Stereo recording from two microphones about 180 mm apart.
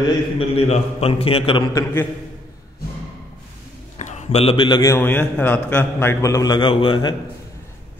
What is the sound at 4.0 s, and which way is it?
A man's voice, 40° left (ahead or behind).